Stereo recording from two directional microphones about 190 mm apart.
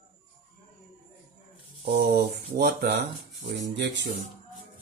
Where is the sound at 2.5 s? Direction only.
55° right (ahead or behind).